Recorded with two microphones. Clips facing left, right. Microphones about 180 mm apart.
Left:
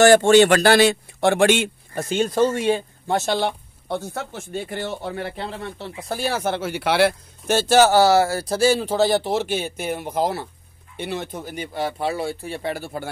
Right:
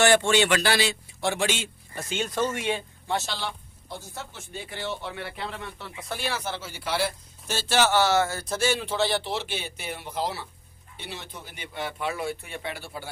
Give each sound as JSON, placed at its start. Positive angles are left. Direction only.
{"t": 0.0, "sound": "speech", "side_deg": 45}
{"t": 2.0, "sound": "speech", "side_deg": 35}
{"t": 3.1, "sound": "speech", "side_deg": 50}